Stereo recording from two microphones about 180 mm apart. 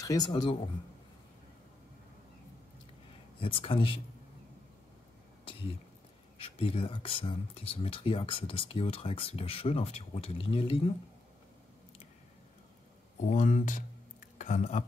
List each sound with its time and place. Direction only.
0.0 s speech: 20° left (ahead or behind)
3.3 s speech: 30° left (ahead or behind)
6.3 s speech: 30° left (ahead or behind)
13.2 s speech: 40° left (ahead or behind)